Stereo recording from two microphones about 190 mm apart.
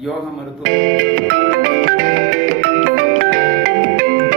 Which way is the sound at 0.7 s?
50° right (ahead or behind).